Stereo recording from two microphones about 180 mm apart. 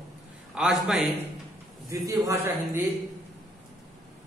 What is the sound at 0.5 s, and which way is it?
Speech, 5° right (ahead or behind).